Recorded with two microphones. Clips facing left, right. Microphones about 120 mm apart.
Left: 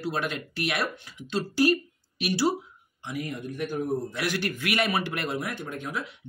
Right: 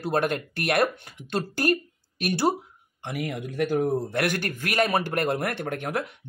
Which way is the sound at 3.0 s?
65° right (ahead or behind).